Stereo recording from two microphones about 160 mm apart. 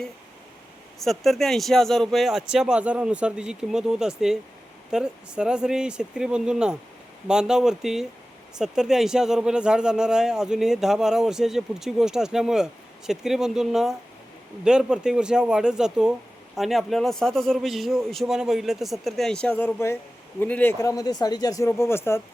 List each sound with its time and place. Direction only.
0.9 s a man's voice: centre (ahead or behind)
20.9 s speech: 25° left (ahead or behind)